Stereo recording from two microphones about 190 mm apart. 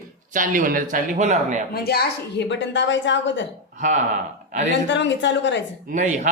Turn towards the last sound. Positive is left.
turn(degrees=-40)  # may be behind; listen again after turning